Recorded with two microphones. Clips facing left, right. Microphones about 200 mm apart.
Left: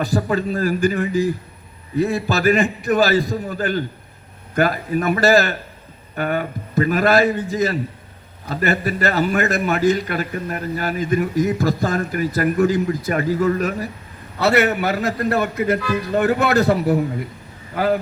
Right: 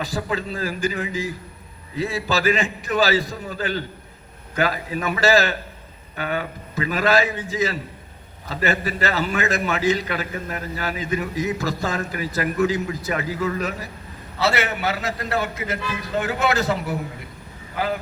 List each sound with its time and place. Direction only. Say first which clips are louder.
0.3 s a man's voice: left 6 dB; 45° left (ahead or behind)
2.3 s a man's voice: left 3 dB; 55° left (ahead or behind)